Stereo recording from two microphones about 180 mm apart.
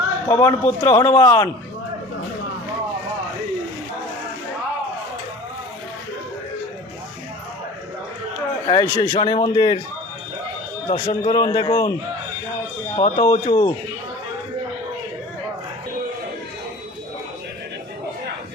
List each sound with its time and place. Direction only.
0.3 s speech: 15° left (ahead or behind)
8.6 s speech: 20° left (ahead or behind)
10.8 s speech: 30° left (ahead or behind)
13.0 s speech: 30° left (ahead or behind)